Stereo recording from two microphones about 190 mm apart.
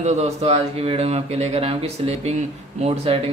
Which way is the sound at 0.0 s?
35° right (ahead or behind).